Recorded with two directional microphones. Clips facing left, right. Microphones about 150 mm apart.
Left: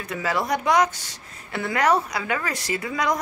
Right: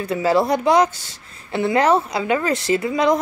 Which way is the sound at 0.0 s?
30° right (ahead or behind).